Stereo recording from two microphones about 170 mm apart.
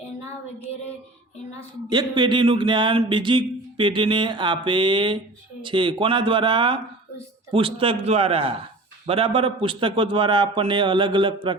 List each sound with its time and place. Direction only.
1.9 s a man's voice: 25° right (ahead or behind)